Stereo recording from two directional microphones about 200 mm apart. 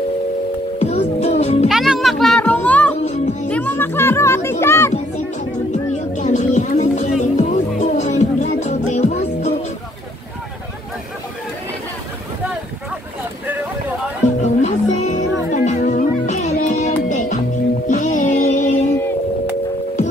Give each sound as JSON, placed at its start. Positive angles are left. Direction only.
{"t": 0.7, "sound": "music", "side_deg": 35}
{"t": 1.7, "sound": "music", "side_deg": 0}
{"t": 3.4, "sound": "children playing", "side_deg": 10}
{"t": 5.7, "sound": "music", "side_deg": 35}
{"t": 14.4, "sound": "music", "side_deg": 35}